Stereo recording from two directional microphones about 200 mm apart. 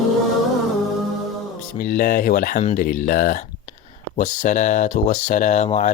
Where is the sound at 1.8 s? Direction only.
45° left (ahead or behind).